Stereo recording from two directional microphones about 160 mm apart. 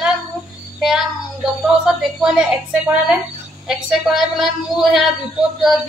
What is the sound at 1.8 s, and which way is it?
Speech, 5° right (ahead or behind).